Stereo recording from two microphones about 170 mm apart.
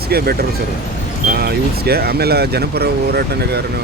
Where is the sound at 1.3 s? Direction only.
65° right (ahead or behind).